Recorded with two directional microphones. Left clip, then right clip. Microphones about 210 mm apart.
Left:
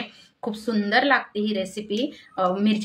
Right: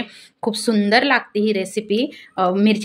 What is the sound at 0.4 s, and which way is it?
A woman's voice, 40° right (ahead or behind).